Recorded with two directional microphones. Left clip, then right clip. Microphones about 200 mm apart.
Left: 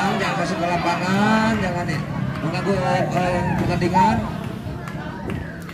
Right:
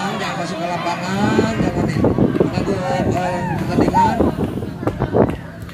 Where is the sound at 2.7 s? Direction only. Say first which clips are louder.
Right 1 dB; 55° left (ahead or behind).